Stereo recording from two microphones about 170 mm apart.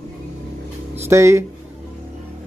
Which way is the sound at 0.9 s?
15° right (ahead or behind).